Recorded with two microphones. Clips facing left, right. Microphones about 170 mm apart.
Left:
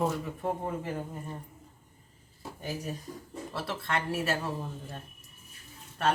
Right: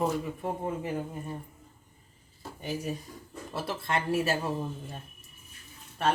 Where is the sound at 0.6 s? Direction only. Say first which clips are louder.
Right 2 dB; 5° right (ahead or behind).